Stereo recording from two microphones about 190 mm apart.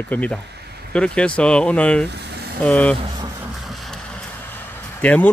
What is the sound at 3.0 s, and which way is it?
Speech, 20° right (ahead or behind).